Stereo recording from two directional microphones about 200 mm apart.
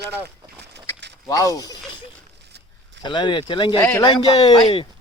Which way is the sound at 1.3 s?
15° left (ahead or behind).